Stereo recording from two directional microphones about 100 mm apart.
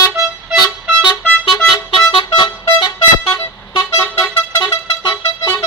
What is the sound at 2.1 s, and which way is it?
Music, 65° left (ahead or behind).